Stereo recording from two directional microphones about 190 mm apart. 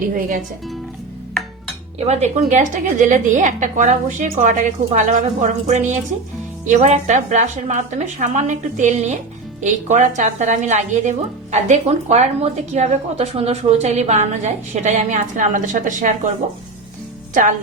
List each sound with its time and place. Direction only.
0.0 s speech: 45° right (ahead or behind)
2.0 s a woman's voice: 35° right (ahead or behind)